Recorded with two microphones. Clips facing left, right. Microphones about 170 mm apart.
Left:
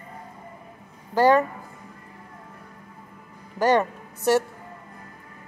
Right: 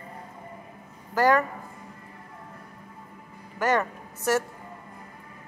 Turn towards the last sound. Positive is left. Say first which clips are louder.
# left 4 dB
turn(degrees=30)  # may be behind; listen again after turning